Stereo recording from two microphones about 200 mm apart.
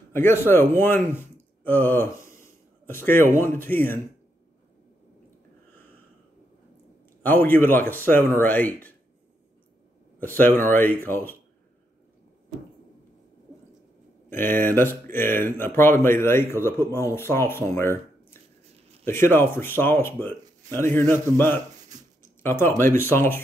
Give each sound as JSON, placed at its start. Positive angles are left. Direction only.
{"t": 0.1, "sound": "a man's voice", "side_deg": 10}
{"t": 7.7, "sound": "speech", "side_deg": 10}
{"t": 10.2, "sound": "speech", "side_deg": 10}
{"t": 14.6, "sound": "speech", "side_deg": 10}
{"t": 19.0, "sound": "speech", "side_deg": 10}
{"t": 22.4, "sound": "speech", "side_deg": 10}